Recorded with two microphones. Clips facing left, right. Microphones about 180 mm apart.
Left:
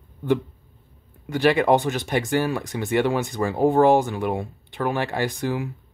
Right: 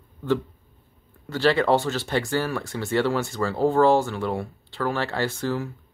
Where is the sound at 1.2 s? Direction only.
15° left (ahead or behind).